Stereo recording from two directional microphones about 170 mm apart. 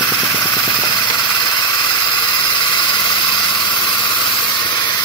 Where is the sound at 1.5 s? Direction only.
25° left (ahead or behind).